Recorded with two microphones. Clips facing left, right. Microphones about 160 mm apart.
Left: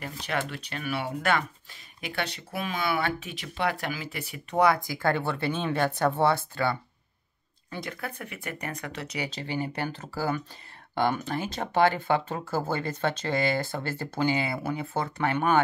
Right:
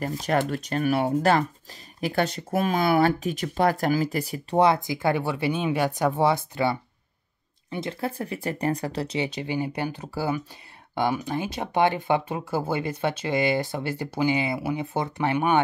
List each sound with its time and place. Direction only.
0.0 s speech: 40° right (ahead or behind)
9.3 s speech: 15° right (ahead or behind)